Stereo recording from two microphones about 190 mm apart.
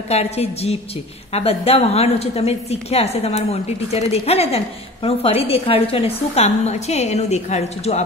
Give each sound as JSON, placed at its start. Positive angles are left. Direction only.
{"t": 0.1, "sound": "a woman's voice", "side_deg": 35}